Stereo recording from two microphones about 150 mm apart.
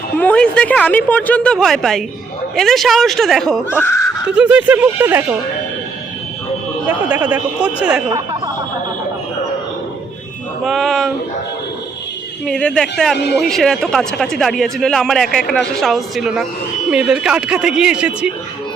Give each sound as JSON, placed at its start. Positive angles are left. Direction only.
{"t": 0.2, "sound": "a woman's voice", "side_deg": 10}
{"t": 3.7, "sound": "speech", "side_deg": 15}
{"t": 4.3, "sound": "speech", "side_deg": -5}
{"t": 6.8, "sound": "speech", "side_deg": -10}
{"t": 10.6, "sound": "a man's voice", "side_deg": 0}
{"t": 12.5, "sound": "a man's voice", "side_deg": 5}